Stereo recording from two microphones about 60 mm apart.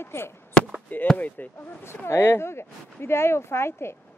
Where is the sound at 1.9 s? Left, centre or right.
Left.